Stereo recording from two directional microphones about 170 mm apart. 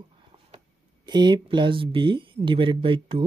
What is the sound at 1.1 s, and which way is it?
Speech, 25° right (ahead or behind).